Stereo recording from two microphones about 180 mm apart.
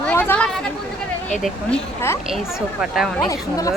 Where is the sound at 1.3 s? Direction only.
5° left (ahead or behind).